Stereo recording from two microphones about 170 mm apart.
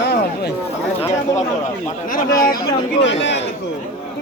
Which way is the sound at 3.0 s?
90° left.